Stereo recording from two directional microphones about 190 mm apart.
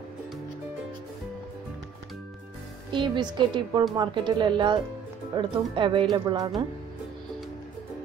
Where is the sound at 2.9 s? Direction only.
25° right (ahead or behind).